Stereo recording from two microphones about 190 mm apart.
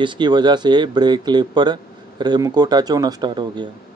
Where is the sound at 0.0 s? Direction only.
25° right (ahead or behind).